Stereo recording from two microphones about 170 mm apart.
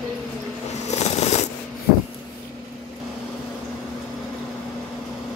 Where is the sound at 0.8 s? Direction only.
40° left (ahead or behind).